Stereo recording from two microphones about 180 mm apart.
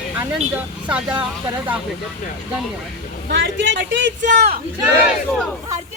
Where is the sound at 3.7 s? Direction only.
85° right.